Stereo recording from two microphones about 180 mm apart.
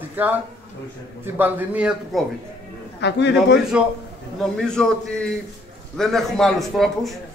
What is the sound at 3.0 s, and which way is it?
Speech, 75° left (ahead or behind).